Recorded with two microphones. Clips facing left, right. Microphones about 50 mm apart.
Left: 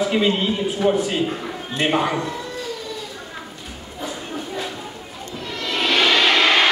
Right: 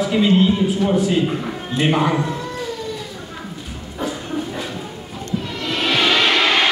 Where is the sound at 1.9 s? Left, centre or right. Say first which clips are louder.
Right 2 dB; centre.